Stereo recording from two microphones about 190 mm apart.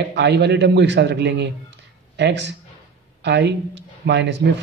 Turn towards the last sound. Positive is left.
turn(degrees=-65)  # may be behind; listen again after turning